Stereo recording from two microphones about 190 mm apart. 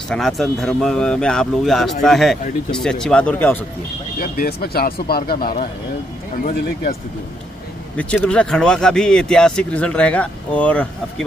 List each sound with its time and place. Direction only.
0.1 s speech: centre (ahead or behind)
4.2 s speech: 50° left (ahead or behind)
8.0 s speech: 5° left (ahead or behind)